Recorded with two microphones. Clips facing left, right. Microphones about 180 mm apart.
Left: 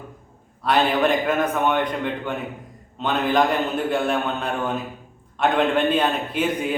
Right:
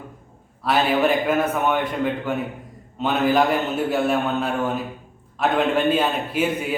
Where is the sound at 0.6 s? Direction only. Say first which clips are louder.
Even; 5° right (ahead or behind).